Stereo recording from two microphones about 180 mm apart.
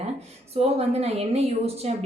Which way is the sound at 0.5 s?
35° right (ahead or behind).